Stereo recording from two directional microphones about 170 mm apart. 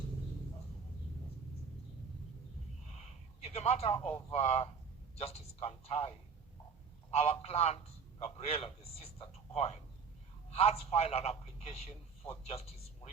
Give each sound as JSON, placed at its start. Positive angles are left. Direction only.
{"t": 3.4, "sound": "a man's voice", "side_deg": 40}